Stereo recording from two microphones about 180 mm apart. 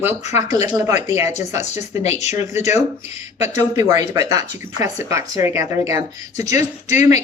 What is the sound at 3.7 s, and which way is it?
A woman's voice, 20° right (ahead or behind).